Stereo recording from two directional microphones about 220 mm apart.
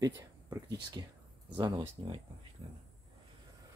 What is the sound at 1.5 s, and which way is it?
Speech, 15° right (ahead or behind).